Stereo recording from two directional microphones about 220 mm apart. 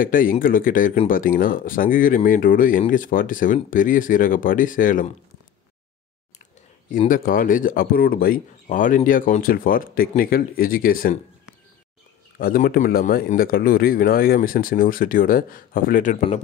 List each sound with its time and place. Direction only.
0.0 s speech: 40° left (ahead or behind)
7.1 s speech: 40° left (ahead or behind)
12.4 s speech: 40° left (ahead or behind)